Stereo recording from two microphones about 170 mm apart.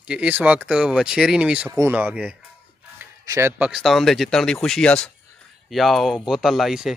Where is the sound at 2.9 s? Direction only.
15° right (ahead or behind).